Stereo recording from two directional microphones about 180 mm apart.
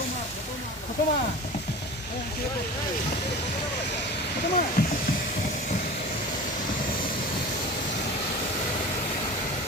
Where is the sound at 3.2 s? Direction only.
70° left (ahead or behind).